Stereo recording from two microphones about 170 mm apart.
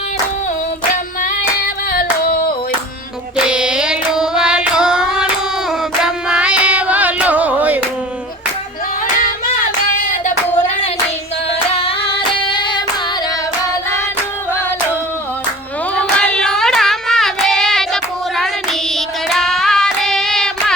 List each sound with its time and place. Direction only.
1.2 s female singing: 60° left (ahead or behind)
3.4 s carnatic music: 5° right (ahead or behind)
6.0 s music: 5° right (ahead or behind)
11.7 s music: 35° left (ahead or behind)
12.4 s hands: 30° left (ahead or behind)
16.0 s singing: 5° left (ahead or behind)